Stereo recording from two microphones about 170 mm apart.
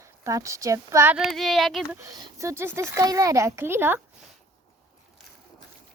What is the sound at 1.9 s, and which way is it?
A child's voice, 20° right (ahead or behind).